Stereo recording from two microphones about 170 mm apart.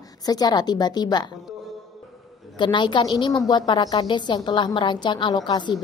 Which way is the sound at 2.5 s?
30° left (ahead or behind).